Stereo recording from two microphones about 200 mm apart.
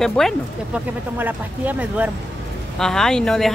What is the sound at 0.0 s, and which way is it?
Speech, centre (ahead or behind).